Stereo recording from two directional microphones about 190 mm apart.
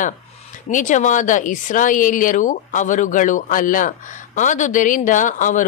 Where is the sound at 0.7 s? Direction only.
40° left (ahead or behind).